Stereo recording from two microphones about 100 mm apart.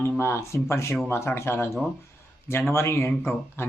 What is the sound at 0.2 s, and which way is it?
Speech, 25° left (ahead or behind).